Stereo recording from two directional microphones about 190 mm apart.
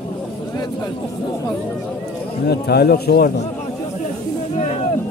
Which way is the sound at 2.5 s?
60° left (ahead or behind).